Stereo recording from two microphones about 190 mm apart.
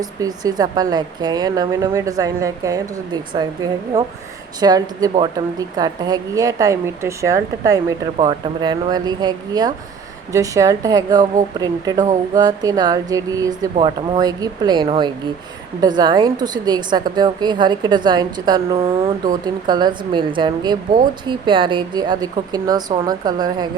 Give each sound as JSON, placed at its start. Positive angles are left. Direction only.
{"t": 0.0, "sound": "a woman's voice", "side_deg": -20}